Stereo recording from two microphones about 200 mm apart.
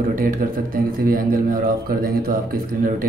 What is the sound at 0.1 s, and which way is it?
A man's voice, 45° right (ahead or behind).